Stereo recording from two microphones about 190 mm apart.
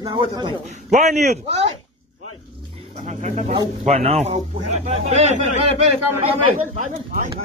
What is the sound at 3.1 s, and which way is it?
Speech, 40° right (ahead or behind).